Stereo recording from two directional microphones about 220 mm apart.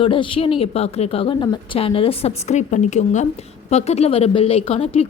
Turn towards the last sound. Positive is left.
turn(degrees=25)  # may be behind; listen again after turning